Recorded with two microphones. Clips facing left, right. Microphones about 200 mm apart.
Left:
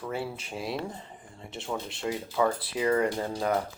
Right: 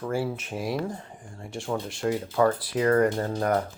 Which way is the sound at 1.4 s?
25° left (ahead or behind).